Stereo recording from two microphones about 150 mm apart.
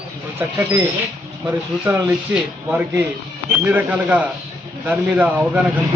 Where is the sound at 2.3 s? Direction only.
15° right (ahead or behind).